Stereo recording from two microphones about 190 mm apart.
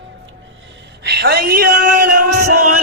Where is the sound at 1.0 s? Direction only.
60° right (ahead or behind).